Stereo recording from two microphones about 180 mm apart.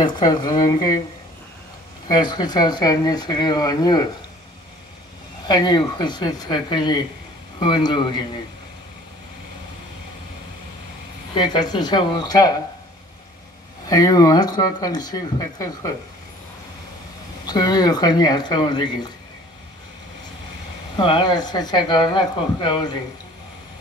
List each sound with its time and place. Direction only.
0.0 s speech: 25° left (ahead or behind)
2.0 s speech: 25° left (ahead or behind)
5.5 s speech: 25° left (ahead or behind)
11.3 s speech: 25° left (ahead or behind)
13.8 s speech: 20° left (ahead or behind)
17.5 s speech: 20° left (ahead or behind)
20.9 s speech: 25° left (ahead or behind)